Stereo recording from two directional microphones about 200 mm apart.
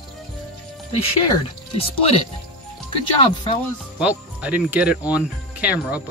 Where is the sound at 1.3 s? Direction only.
30° left (ahead or behind).